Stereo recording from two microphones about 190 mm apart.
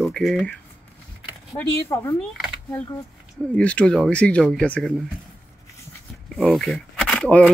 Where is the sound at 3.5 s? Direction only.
5° left (ahead or behind).